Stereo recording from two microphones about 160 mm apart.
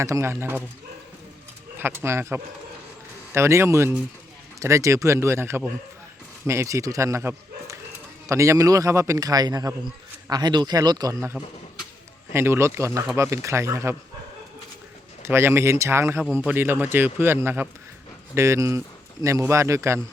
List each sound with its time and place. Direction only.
0.0 s a man's voice: 20° right (ahead or behind)
1.8 s a man's voice: 15° right (ahead or behind)
12.3 s a man's voice: 15° right (ahead or behind)
15.2 s a man's voice: 15° right (ahead or behind)